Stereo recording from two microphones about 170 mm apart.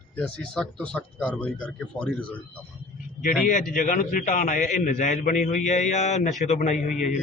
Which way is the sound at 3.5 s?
50° left (ahead or behind).